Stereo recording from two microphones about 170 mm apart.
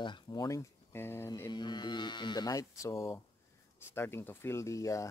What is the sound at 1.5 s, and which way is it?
Speech, 25° left (ahead or behind).